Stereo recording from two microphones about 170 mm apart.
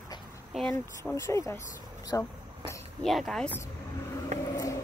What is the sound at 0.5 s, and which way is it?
Speech, centre (ahead or behind).